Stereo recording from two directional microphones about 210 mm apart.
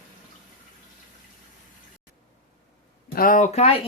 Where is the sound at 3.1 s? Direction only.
40° left (ahead or behind).